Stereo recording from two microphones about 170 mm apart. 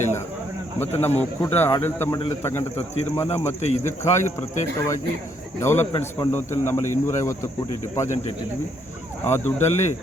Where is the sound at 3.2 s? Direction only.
40° left (ahead or behind).